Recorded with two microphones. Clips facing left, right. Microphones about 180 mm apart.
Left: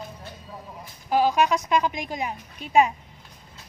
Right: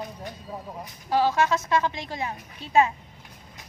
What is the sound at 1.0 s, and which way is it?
Speech, 15° left (ahead or behind).